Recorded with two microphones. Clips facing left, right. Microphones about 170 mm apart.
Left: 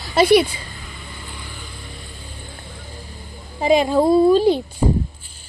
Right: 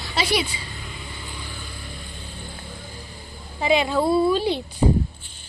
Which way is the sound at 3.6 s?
40° left (ahead or behind).